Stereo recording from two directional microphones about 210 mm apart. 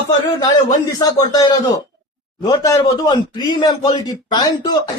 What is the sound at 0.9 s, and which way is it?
Speech, 15° left (ahead or behind).